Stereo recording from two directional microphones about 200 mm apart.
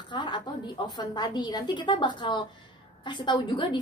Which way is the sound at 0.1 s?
20° left (ahead or behind).